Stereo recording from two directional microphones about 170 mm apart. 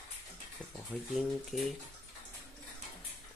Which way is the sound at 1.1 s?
Centre (ahead or behind).